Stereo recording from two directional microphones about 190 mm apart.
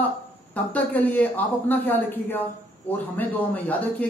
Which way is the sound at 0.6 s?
5° left (ahead or behind).